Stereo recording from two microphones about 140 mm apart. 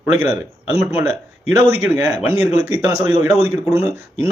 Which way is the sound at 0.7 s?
20° right (ahead or behind).